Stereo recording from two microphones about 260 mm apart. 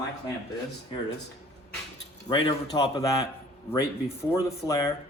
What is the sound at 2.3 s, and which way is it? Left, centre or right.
A man's voice, centre.